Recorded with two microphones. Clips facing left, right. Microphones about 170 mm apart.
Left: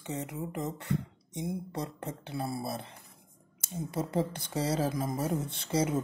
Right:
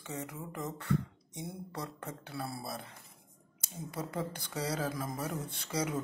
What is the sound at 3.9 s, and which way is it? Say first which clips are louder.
Speech: left 6 dB; 25° left (ahead or behind).